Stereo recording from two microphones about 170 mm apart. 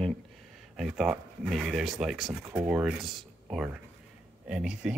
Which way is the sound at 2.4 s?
10° right (ahead or behind).